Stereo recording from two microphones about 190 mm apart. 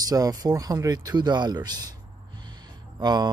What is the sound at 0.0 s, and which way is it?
Speech, 20° right (ahead or behind).